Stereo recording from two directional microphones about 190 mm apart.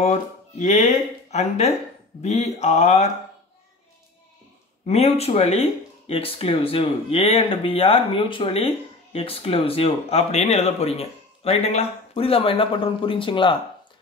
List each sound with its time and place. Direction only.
0.0 s speech: 40° left (ahead or behind)
4.8 s speech: 35° left (ahead or behind)